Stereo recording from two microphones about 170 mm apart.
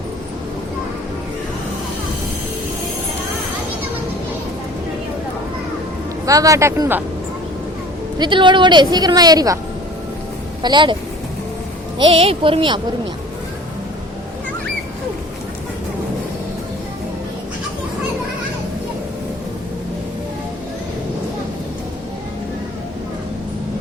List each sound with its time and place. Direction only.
6.2 s a woman's voice: 20° right (ahead or behind)
8.2 s a woman's voice: 30° right (ahead or behind)
10.6 s a woman's voice: 25° right (ahead or behind)
11.9 s speech: 35° right (ahead or behind)